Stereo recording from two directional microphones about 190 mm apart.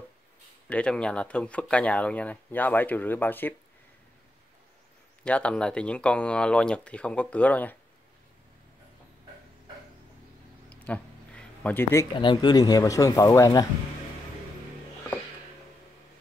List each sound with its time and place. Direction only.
0.7 s speech: 5° left (ahead or behind)
5.2 s speech: 5° left (ahead or behind)
10.7 s speech: 5° left (ahead or behind)